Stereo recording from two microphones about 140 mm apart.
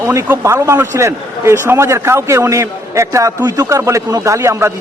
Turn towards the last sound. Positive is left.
turn(degrees=-20)  # may be behind; listen again after turning